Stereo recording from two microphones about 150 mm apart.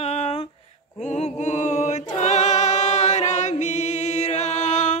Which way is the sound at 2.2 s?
50° left (ahead or behind).